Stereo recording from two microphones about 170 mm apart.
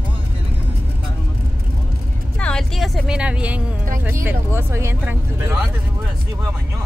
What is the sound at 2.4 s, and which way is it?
A woman's voice, 5° left (ahead or behind).